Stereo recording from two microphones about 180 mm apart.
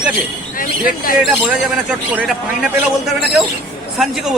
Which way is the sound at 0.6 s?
50° left (ahead or behind).